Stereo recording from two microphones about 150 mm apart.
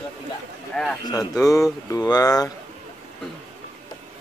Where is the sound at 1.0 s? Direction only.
25° left (ahead or behind).